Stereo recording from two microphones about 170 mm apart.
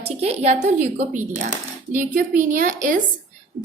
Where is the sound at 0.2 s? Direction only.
40° right (ahead or behind).